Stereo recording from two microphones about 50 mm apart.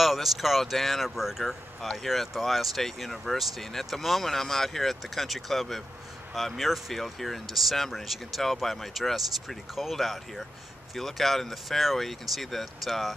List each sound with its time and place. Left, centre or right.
0.0 s speech: centre